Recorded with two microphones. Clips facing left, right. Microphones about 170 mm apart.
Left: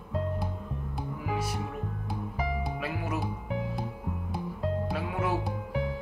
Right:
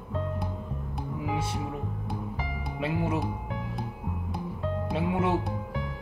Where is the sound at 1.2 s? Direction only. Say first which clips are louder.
Right 1 dB; 25° right (ahead or behind).